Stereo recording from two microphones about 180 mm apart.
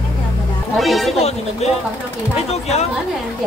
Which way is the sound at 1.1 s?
35° left (ahead or behind).